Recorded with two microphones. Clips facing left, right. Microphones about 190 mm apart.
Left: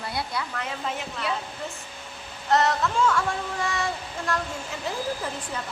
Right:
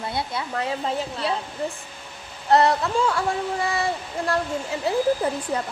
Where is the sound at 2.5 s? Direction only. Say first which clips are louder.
Right 4 dB; 35° right (ahead or behind).